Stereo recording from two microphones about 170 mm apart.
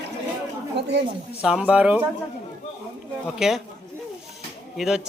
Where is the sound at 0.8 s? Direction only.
80° right.